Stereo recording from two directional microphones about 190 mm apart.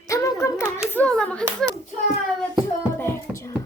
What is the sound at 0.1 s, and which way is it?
Hands, 15° left (ahead or behind).